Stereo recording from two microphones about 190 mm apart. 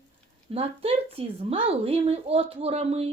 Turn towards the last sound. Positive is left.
turn(degrees=-30)  # may be behind; listen again after turning